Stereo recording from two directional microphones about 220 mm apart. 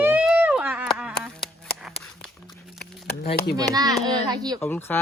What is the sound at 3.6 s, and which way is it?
A child's voice, 15° right (ahead or behind).